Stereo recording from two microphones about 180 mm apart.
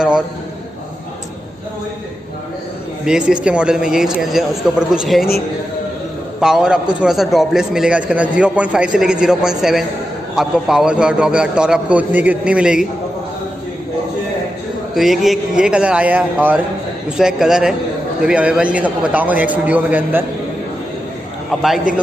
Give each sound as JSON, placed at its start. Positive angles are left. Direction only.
{"t": 3.1, "sound": "a man's voice", "side_deg": -5}
{"t": 6.4, "sound": "a man's voice", "side_deg": -5}
{"t": 15.0, "sound": "a man's voice", "side_deg": 0}